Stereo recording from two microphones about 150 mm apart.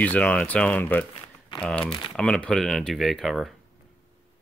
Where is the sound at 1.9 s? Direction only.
35° left (ahead or behind).